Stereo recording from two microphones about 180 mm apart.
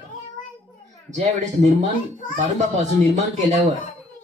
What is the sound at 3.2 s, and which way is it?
Speech, 40° right (ahead or behind).